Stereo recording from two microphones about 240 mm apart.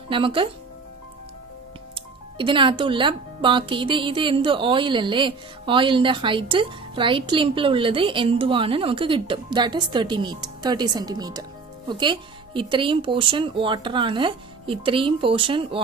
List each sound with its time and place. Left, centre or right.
0.1 s speech: right
2.0 s speech: right